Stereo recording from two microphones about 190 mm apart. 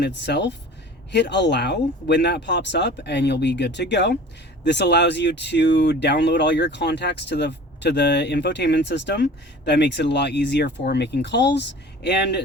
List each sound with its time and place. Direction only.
0.0 s speech: 65° left (ahead or behind)